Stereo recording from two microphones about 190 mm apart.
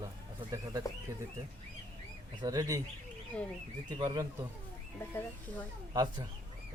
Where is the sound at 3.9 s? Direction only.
20° right (ahead or behind).